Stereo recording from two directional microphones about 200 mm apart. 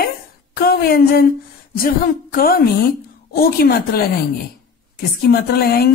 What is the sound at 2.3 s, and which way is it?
A woman's voice, 45° left (ahead or behind).